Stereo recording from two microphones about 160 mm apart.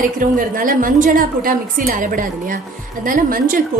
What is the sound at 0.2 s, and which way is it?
A woman's voice, 60° right (ahead or behind).